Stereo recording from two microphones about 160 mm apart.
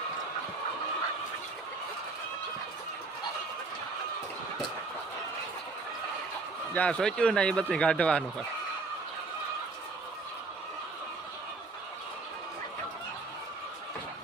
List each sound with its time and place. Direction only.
6.7 s speech: 10° left (ahead or behind)